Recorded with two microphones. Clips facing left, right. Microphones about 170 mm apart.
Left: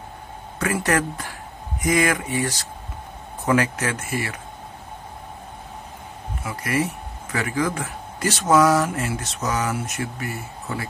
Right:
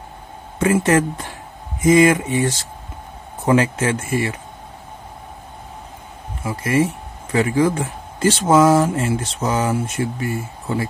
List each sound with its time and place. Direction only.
0.6 s speech: 25° right (ahead or behind)
6.4 s speech: 25° right (ahead or behind)